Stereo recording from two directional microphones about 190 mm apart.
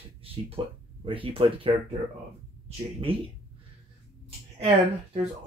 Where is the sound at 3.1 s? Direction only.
30° right (ahead or behind).